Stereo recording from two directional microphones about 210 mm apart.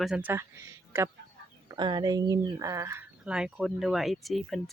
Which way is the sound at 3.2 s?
5° right (ahead or behind).